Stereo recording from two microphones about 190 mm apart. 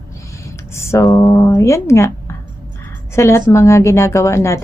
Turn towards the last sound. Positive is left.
turn(degrees=15)  # may be behind; listen again after turning